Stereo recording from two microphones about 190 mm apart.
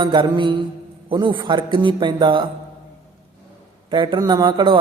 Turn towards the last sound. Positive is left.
turn(degrees=-25)  # may be behind; listen again after turning